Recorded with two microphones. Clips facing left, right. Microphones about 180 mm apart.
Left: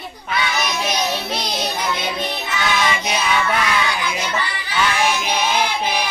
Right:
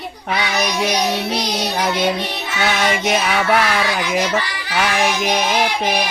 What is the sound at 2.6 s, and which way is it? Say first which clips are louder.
Child singing: right 3 dB; 65° right (ahead or behind).